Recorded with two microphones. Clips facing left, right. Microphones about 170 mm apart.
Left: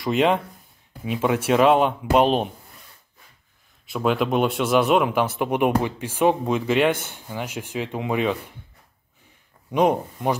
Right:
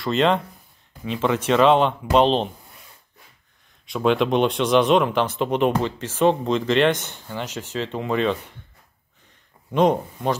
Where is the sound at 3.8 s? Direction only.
5° left (ahead or behind).